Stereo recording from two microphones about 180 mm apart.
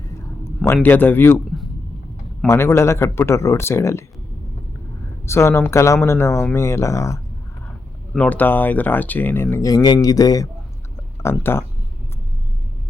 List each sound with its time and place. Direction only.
0.4 s a man's voice: 10° left (ahead or behind)
2.5 s speech: 15° left (ahead or behind)
5.2 s speech: 15° left (ahead or behind)